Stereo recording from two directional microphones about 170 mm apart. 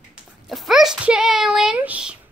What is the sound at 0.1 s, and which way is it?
A child's voice, centre (ahead or behind).